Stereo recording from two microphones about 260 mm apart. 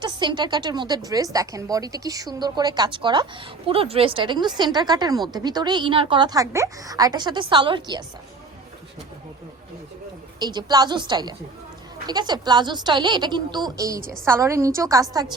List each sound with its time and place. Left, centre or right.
0.0 s a woman's voice: centre
10.4 s a woman's voice: centre